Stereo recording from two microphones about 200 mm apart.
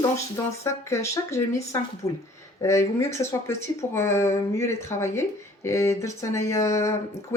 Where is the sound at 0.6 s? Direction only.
15° left (ahead or behind).